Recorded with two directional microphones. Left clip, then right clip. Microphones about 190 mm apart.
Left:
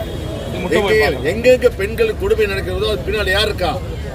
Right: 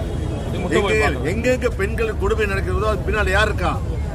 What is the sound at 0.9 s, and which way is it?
Speech, 5° right (ahead or behind).